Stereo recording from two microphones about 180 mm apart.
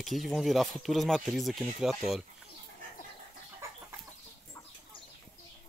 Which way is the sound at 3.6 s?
15° right (ahead or behind).